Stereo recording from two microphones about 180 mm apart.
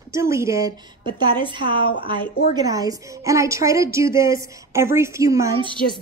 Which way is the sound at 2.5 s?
20° right (ahead or behind).